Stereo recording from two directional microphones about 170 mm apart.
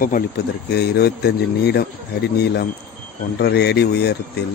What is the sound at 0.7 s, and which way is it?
Speech, 70° left (ahead or behind).